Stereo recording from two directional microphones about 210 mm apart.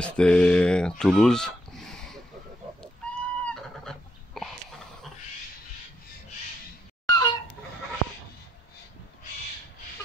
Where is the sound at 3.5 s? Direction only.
Centre (ahead or behind).